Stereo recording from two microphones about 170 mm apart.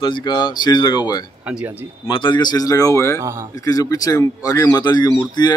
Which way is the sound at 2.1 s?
30° left (ahead or behind).